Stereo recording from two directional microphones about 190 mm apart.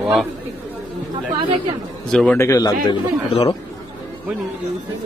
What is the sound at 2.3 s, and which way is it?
A man's voice, 15° left (ahead or behind).